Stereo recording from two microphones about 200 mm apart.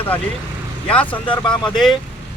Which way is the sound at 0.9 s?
5° left (ahead or behind).